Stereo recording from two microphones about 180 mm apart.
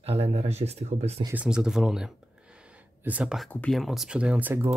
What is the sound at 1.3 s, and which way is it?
Speech, 5° right (ahead or behind).